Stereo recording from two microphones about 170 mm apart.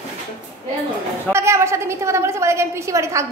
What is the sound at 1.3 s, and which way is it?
A woman's voice, 15° right (ahead or behind).